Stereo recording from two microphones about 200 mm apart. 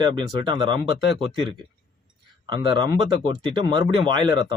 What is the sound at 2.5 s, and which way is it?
Speech, 25° right (ahead or behind).